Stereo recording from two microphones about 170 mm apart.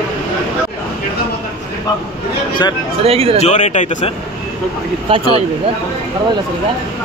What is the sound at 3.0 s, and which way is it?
Speech, 35° right (ahead or behind).